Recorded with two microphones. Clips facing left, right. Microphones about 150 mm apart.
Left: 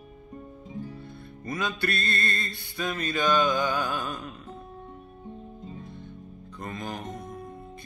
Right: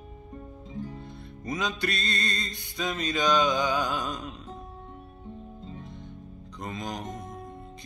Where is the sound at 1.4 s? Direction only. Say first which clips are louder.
Even; 20° right (ahead or behind).